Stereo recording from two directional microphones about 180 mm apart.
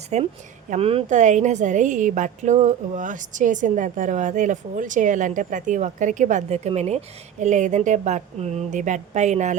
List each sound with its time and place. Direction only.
0.1 s a woman's voice: 40° right (ahead or behind)